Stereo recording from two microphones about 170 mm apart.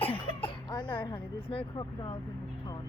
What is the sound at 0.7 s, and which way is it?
Speech, 25° left (ahead or behind).